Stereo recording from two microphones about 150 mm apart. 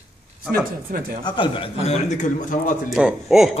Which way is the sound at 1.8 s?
50° left (ahead or behind).